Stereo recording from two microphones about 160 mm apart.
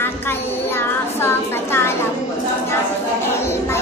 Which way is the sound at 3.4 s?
15° left (ahead or behind).